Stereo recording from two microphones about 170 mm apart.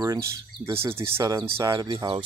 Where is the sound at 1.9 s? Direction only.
30° right (ahead or behind).